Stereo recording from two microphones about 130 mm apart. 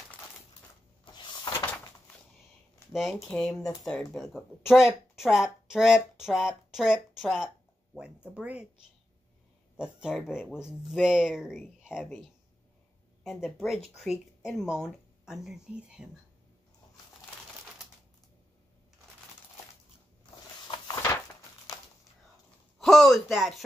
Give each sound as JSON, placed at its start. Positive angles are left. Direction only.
{"t": 1.0, "sound": "power windows", "side_deg": 35}
{"t": 2.9, "sound": "speech", "side_deg": 0}
{"t": 9.8, "sound": "speech", "side_deg": -5}
{"t": 11.8, "sound": "a sound", "side_deg": -5}
{"t": 13.2, "sound": "speech", "side_deg": 0}
{"t": 20.6, "sound": "a sound", "side_deg": 30}
{"t": 22.8, "sound": "speech", "side_deg": 0}